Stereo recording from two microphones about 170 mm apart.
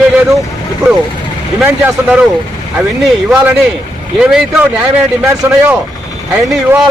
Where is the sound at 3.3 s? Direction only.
10° right (ahead or behind).